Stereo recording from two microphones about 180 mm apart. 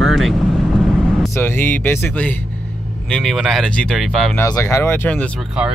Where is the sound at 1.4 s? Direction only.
10° left (ahead or behind).